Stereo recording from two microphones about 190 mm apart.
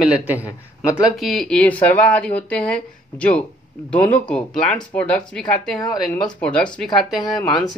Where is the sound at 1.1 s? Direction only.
Centre (ahead or behind).